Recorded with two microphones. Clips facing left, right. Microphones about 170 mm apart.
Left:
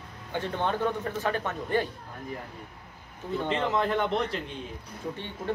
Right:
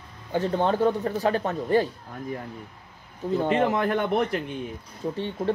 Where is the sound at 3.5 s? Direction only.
55° right (ahead or behind).